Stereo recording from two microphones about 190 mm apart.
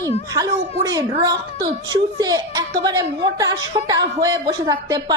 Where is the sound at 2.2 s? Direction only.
20° right (ahead or behind).